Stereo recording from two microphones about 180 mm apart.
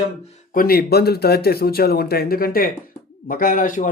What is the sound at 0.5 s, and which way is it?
Speech, 60° left (ahead or behind).